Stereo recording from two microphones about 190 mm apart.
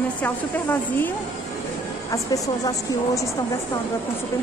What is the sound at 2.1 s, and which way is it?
A woman's voice, 15° left (ahead or behind).